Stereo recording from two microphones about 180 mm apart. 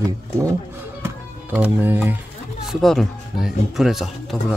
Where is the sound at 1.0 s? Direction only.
10° right (ahead or behind).